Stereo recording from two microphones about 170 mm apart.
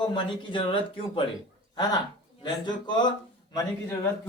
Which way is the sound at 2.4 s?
25° left (ahead or behind).